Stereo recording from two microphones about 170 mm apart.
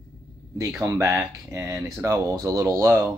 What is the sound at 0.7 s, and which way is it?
Speech, 15° right (ahead or behind).